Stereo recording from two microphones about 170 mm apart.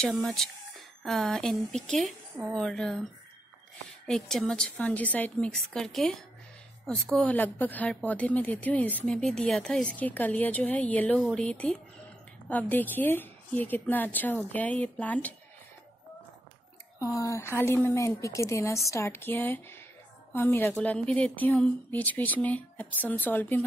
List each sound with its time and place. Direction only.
0.0 s a woman's voice: 5° left (ahead or behind)
4.1 s a woman's voice: 5° left (ahead or behind)
17.0 s a woman's voice: 20° left (ahead or behind)